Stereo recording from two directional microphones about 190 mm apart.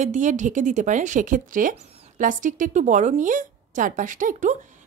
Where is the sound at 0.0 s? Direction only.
40° right (ahead or behind).